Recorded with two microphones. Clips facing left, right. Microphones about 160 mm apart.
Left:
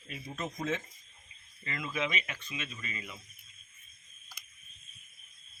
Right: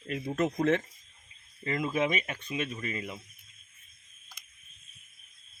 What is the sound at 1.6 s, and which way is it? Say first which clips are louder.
Speech: right 7 dB; 40° right (ahead or behind).